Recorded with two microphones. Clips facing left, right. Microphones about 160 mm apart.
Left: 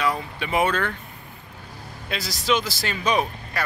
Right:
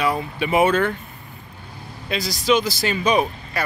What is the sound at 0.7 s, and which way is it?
Speech, 20° right (ahead or behind).